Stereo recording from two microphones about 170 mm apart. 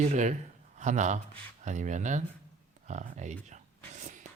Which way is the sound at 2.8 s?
45° right (ahead or behind).